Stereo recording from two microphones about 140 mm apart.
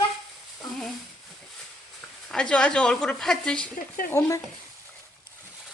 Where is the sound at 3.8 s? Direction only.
80° left.